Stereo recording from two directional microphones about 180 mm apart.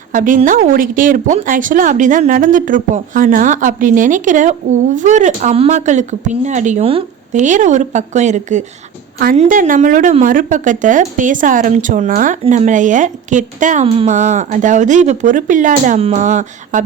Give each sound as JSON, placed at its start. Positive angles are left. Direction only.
{"t": 0.1, "sound": "speech", "side_deg": -45}